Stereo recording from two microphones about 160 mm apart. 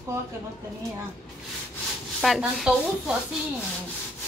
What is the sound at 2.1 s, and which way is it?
Speech, centre (ahead or behind).